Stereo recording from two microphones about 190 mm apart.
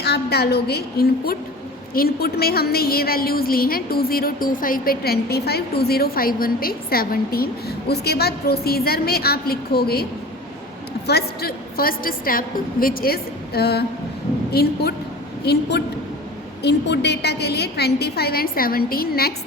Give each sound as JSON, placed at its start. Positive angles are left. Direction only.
{"t": 0.0, "sound": "a woman's voice", "side_deg": 60}
{"t": 16.6, "sound": "a woman's voice", "side_deg": 65}